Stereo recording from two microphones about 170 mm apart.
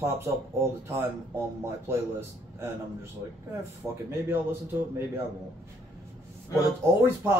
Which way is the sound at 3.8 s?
15° right (ahead or behind).